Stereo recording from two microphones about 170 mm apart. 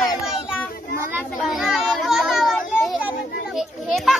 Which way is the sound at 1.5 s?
Centre (ahead or behind).